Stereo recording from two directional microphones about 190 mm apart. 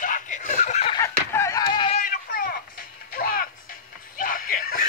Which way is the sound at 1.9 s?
45° left (ahead or behind).